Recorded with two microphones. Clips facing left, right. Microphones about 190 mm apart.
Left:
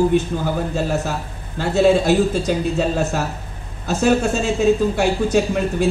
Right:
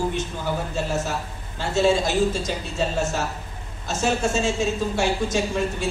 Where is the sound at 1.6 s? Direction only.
60° left (ahead or behind).